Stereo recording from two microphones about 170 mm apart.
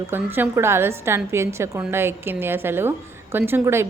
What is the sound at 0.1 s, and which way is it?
A woman's voice, 10° right (ahead or behind).